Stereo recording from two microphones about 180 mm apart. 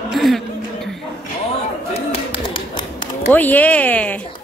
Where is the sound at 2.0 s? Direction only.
30° left (ahead or behind).